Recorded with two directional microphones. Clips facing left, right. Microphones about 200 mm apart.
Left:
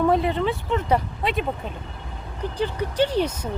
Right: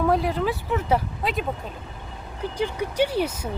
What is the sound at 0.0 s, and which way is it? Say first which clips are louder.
Speech: left 2 dB; centre (ahead or behind).